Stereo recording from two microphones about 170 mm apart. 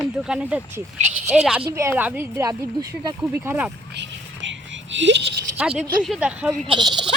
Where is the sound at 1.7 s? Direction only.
15° right (ahead or behind).